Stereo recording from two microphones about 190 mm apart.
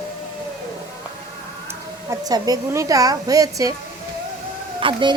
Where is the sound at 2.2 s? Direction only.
20° right (ahead or behind).